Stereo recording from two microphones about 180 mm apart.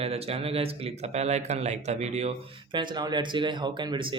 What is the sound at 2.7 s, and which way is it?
Speech, 25° right (ahead or behind).